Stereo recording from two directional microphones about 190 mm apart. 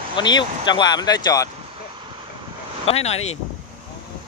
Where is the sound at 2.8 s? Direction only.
35° left (ahead or behind).